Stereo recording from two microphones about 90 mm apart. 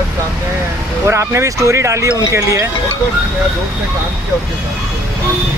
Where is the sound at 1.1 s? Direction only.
30° right (ahead or behind).